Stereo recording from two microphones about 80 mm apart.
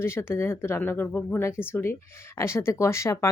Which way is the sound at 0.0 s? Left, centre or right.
Left.